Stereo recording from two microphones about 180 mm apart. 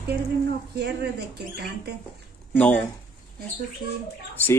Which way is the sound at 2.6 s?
5° left (ahead or behind).